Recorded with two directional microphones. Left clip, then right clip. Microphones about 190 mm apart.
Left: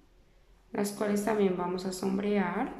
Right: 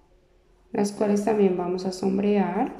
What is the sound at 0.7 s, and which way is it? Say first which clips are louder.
Speech: right 7 dB; 15° left (ahead or behind).